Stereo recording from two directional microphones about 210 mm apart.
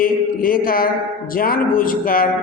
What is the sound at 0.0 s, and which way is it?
Speech, 45° left (ahead or behind).